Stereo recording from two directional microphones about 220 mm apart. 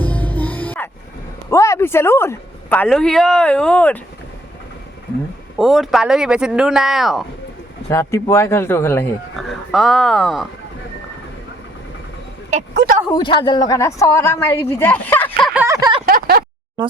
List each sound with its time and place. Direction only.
0.0 s music: 5° left (ahead or behind)
1.5 s speech: 15° left (ahead or behind)
5.5 s speech: centre (ahead or behind)
7.9 s speech: 15° left (ahead or behind)
12.7 s speech: 45° right (ahead or behind)
13.1 s speech: 20° left (ahead or behind); by 15.6 s centre (ahead or behind)
15.6 s a sound: 15° right (ahead or behind)
16.0 s a sound: 40° right (ahead or behind)